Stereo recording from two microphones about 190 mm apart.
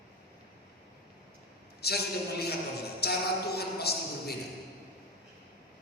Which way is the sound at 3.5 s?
55° left (ahead or behind).